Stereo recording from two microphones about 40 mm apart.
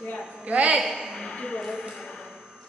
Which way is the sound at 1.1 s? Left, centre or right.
Centre.